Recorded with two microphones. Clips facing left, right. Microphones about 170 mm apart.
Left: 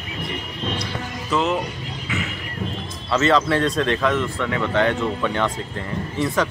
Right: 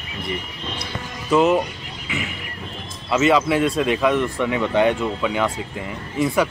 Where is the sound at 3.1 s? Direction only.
10° right (ahead or behind).